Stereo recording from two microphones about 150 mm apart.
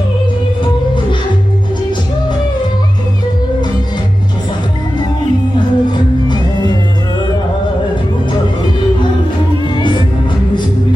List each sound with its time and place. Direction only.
5.6 s music: 30° left (ahead or behind)